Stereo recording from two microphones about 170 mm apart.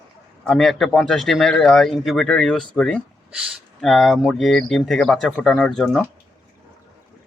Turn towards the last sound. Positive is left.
turn(degrees=0)  # may be behind; listen again after turning